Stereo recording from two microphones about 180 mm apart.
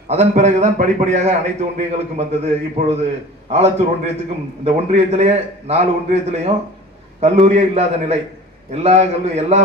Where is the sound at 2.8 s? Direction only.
35° right (ahead or behind).